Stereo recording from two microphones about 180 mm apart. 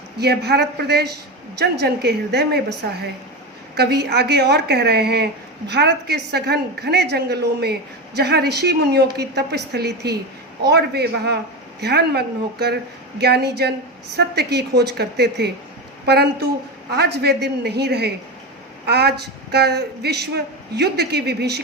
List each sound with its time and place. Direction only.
0.2 s a woman's voice: 65° right (ahead or behind)